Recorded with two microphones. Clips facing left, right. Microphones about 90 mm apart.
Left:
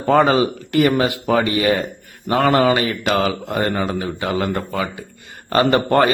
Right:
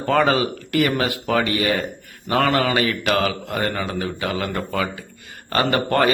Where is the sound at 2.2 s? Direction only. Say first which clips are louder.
Left 4 dB; 30° left (ahead or behind).